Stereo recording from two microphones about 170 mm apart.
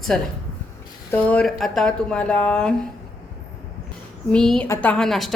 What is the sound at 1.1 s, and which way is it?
Speech, 10° left (ahead or behind).